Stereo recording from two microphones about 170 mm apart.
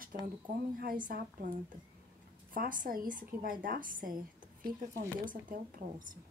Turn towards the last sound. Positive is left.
turn(degrees=-55)  # may be behind; listen again after turning